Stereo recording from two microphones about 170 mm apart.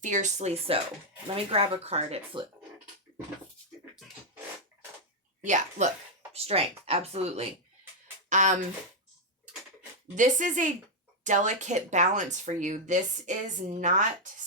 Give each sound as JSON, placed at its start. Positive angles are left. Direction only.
{"t": 0.0, "sound": "speech", "side_deg": -45}
{"t": 5.4, "sound": "speech", "side_deg": -45}
{"t": 10.2, "sound": "speech", "side_deg": -45}